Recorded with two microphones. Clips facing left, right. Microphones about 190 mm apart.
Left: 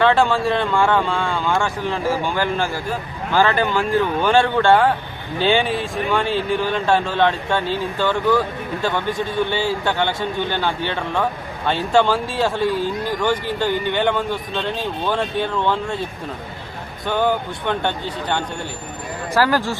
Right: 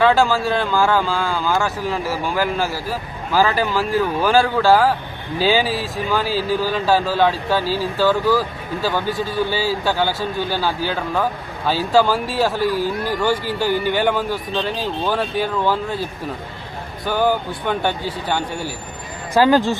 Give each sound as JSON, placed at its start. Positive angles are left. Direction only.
{"t": 0.0, "sound": "speech", "side_deg": 0}
{"t": 12.7, "sound": "a man's voice", "side_deg": 25}
{"t": 13.1, "sound": "speech", "side_deg": -10}
{"t": 17.1, "sound": "speech", "side_deg": -5}
{"t": 19.3, "sound": "speech", "side_deg": -20}